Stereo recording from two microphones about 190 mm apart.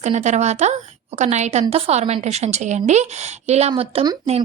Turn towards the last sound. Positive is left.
turn(degrees=-35)  # may be behind; listen again after turning